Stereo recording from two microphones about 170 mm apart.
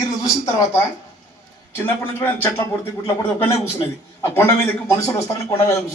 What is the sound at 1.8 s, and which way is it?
A man's voice, 15° left (ahead or behind).